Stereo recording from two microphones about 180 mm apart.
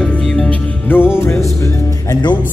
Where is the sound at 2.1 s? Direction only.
25° left (ahead or behind).